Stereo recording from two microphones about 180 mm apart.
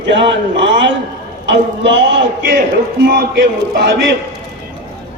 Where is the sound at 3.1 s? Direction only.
60° right (ahead or behind).